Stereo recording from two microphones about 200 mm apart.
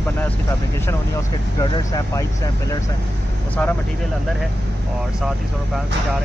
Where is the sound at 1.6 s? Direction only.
20° left (ahead or behind).